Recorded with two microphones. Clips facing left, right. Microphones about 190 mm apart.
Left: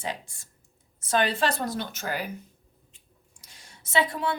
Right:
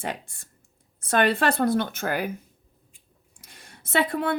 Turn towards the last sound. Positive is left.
turn(degrees=-55)  # may be behind; listen again after turning